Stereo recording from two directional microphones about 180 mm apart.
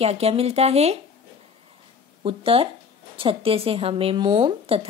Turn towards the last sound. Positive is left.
turn(degrees=-30)  # may be behind; listen again after turning